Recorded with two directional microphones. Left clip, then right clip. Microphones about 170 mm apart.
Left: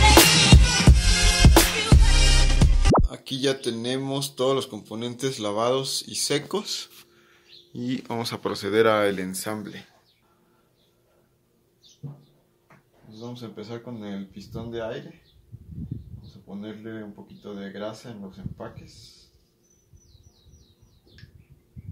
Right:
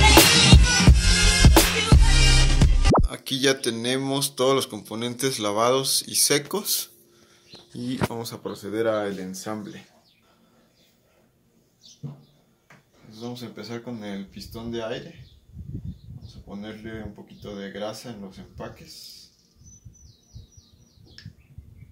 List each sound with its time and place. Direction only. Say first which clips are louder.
0.0 s music: right 1 dB; centre (ahead or behind)
7.7 s speech: right 2 dB; 15° left (ahead or behind)
8.4 s speech: left 7 dB; 45° left (ahead or behind)
13.3 s speech: right 1 dB; 25° left (ahead or behind)
17.4 s speech: right 2 dB; 25° left (ahead or behind)